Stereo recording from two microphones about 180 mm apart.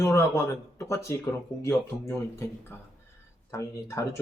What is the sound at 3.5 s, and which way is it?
Speech, 15° left (ahead or behind).